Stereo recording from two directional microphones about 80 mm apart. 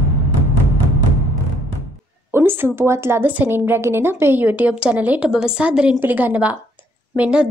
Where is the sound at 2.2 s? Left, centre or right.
Right; by 6.0 s centre.